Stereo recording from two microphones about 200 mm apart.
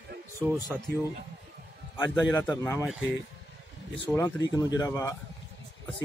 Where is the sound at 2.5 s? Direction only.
15° left (ahead or behind).